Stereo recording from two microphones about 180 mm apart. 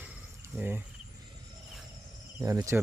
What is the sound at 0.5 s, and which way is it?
Cricket, 10° right (ahead or behind).